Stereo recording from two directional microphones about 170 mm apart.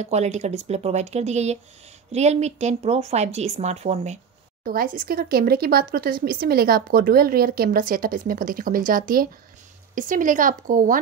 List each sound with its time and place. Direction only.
0.0 s a woman's voice: 40° right (ahead or behind)
4.6 s a woman's voice: 55° right (ahead or behind)